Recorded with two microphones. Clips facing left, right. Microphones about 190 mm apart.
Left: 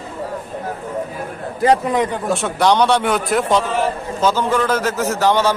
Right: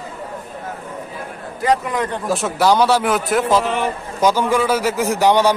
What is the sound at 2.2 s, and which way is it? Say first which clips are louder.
A man's voice: right 3 dB; centre (ahead or behind).